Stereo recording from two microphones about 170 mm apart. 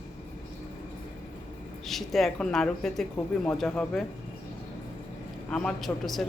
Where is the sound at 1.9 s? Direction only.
Centre (ahead or behind).